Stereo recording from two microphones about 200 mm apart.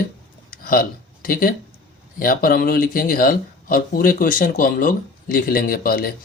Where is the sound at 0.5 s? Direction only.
45° left (ahead or behind).